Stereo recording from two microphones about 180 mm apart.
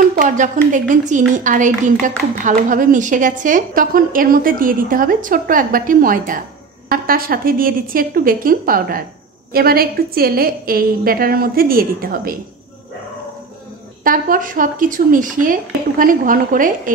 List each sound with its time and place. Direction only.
0.2 s a woman's voice: 45° right (ahead or behind)
14.0 s a woman's voice: 50° right (ahead or behind)